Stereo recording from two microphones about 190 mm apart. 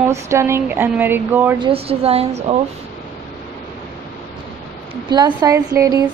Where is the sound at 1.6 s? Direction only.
30° right (ahead or behind).